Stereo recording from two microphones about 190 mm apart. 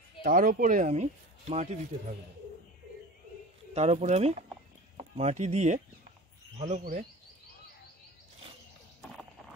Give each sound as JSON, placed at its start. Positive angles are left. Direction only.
{"t": 0.2, "sound": "speech", "side_deg": -45}
{"t": 3.7, "sound": "speech", "side_deg": -35}